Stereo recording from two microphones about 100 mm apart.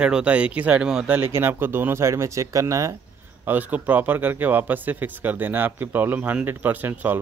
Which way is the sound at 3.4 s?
15° right (ahead or behind).